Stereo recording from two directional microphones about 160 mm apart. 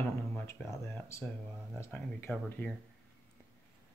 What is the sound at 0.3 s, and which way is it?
Speech, 10° left (ahead or behind).